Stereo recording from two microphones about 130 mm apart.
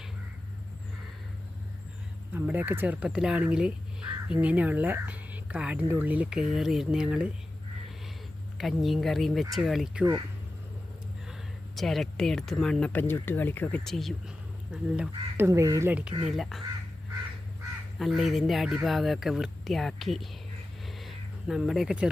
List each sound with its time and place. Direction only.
2.3 s speech: 15° right (ahead or behind)
8.5 s speech: centre (ahead or behind)
11.8 s speech: centre (ahead or behind)
13.8 s speech: centre (ahead or behind)
15.4 s speech: 20° right (ahead or behind)
15.9 s speech: 10° right (ahead or behind)
18.0 s speech: centre (ahead or behind)
20.8 s a sound: centre (ahead or behind)